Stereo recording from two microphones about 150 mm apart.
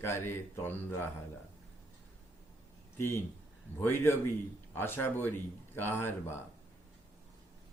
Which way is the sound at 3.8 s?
15° left (ahead or behind).